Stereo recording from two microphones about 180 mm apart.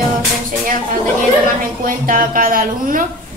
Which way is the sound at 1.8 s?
50° right (ahead or behind).